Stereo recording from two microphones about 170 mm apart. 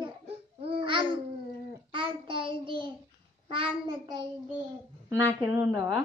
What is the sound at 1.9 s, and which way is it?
Child singing, 30° right (ahead or behind).